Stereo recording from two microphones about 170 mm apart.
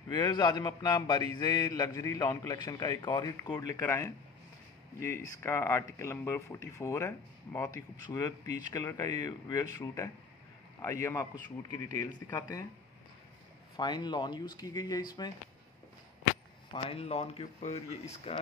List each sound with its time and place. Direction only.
0.1 s a man's voice: 25° left (ahead or behind)
5.4 s a man's voice: 15° left (ahead or behind)
13.7 s a man's voice: 25° left (ahead or behind)
16.7 s speech: 35° left (ahead or behind)